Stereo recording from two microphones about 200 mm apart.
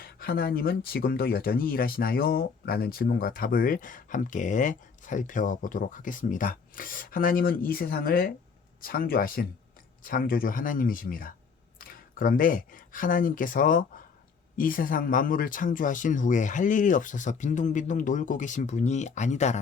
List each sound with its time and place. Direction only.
0.0 s speech: 50° left (ahead or behind)